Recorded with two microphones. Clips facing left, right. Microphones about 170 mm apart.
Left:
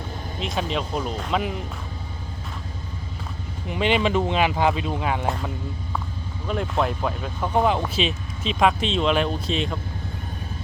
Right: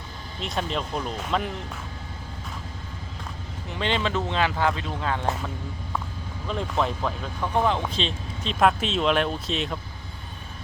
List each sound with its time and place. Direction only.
0.3 s speech: centre (ahead or behind)
3.7 s speech: 15° left (ahead or behind)
6.5 s speech: 5° left (ahead or behind)